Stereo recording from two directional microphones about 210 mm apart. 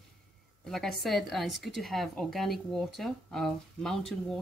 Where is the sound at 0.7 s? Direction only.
Centre (ahead or behind).